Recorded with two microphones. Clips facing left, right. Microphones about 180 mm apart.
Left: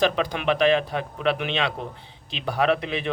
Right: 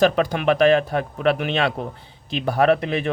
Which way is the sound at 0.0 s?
45° right (ahead or behind).